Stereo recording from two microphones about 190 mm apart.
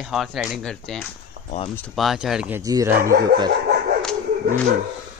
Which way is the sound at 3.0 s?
50° right (ahead or behind).